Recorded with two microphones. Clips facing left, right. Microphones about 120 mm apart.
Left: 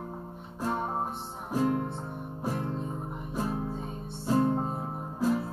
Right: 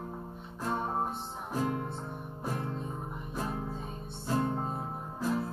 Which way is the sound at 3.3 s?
10° left (ahead or behind).